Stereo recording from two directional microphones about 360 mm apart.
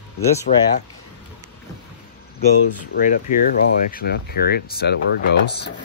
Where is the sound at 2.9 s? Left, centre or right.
Left.